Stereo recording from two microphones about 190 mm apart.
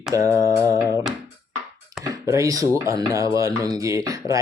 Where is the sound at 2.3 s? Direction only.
15° right (ahead or behind).